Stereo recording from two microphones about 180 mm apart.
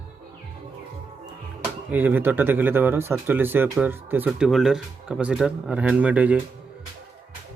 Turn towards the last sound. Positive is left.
turn(degrees=-10)  # may be behind; listen again after turning